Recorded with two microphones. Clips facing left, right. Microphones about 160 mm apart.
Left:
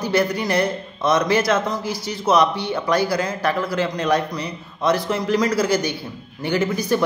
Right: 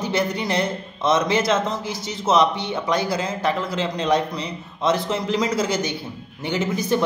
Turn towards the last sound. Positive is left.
turn(degrees=-20)  # may be behind; listen again after turning